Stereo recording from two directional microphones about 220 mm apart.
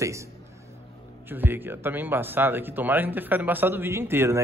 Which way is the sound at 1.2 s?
10° right (ahead or behind).